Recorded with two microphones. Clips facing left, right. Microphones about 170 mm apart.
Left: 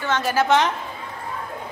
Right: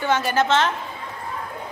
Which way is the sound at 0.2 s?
5° left (ahead or behind).